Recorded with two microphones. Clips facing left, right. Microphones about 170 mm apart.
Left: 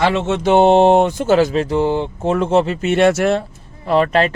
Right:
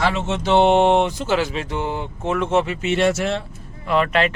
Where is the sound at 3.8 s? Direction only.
35° left (ahead or behind).